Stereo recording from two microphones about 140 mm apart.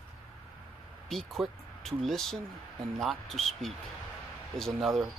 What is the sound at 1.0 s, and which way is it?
Speech, centre (ahead or behind).